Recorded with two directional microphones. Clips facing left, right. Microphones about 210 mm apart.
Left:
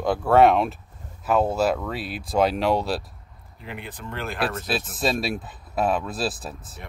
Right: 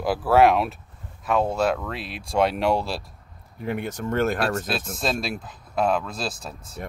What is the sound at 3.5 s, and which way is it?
Speech, 50° right (ahead or behind).